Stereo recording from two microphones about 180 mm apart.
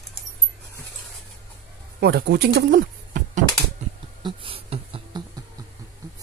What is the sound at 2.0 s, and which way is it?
Speech, 60° right (ahead or behind).